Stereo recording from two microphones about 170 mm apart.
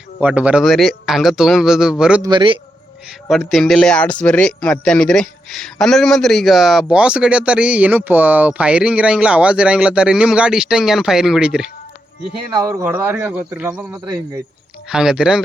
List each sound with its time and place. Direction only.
0.2 s speech: 10° right (ahead or behind)
2.2 s speech: 30° right (ahead or behind)
3.1 s speech: centre (ahead or behind)
12.5 s a man's voice: 20° right (ahead or behind)
14.8 s speech: 5° right (ahead or behind)